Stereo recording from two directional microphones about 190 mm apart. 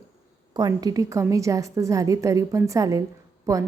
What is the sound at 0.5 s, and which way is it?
A woman's voice, 20° right (ahead or behind).